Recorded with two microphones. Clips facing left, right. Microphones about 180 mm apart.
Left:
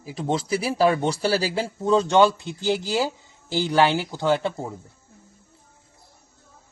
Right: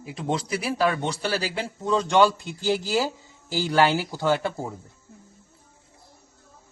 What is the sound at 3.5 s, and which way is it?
A man's voice, 20° left (ahead or behind).